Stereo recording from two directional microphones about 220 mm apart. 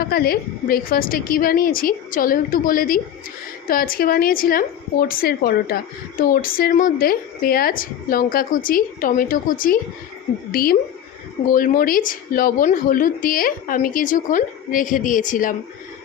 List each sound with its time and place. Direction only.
0.0 s speech: 45° left (ahead or behind)